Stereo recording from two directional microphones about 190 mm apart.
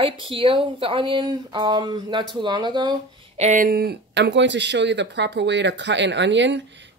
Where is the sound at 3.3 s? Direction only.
40° right (ahead or behind).